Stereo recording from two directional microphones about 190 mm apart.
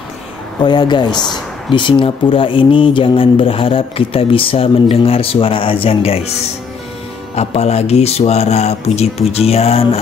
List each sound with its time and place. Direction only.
0.6 s speech: 20° left (ahead or behind)
7.3 s speech: 35° left (ahead or behind)